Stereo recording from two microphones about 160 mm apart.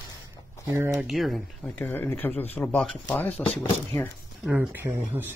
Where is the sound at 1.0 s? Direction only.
Centre (ahead or behind).